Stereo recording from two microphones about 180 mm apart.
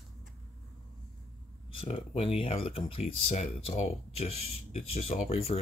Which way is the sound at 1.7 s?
30° left (ahead or behind).